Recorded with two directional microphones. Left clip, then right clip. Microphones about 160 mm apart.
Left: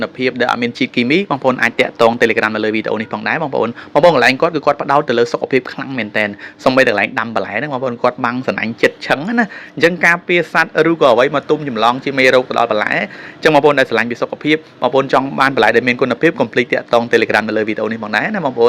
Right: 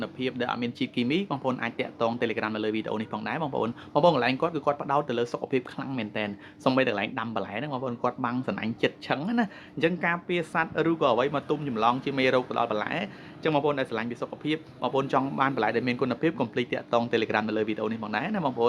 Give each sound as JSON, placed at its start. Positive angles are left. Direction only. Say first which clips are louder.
{"t": 0.0, "sound": "speech", "louder": "left 14 dB", "side_deg": 25}